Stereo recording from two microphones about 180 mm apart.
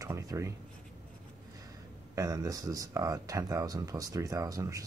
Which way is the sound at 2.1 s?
20° right (ahead or behind).